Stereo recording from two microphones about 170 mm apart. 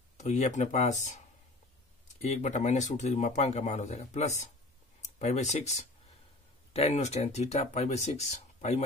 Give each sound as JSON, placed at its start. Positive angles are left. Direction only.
{"t": 0.2, "sound": "speech", "side_deg": 45}
{"t": 2.2, "sound": "speech", "side_deg": 40}